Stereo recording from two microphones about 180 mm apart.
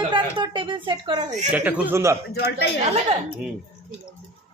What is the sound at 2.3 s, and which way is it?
Speech, 65° left (ahead or behind).